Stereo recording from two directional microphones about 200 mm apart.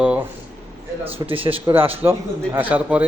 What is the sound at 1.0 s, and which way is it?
Speech, 25° right (ahead or behind).